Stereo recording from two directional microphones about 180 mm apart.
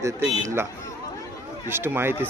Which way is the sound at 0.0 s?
15° right (ahead or behind).